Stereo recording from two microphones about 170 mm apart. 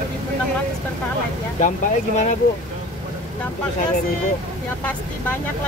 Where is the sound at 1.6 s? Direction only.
45° left (ahead or behind).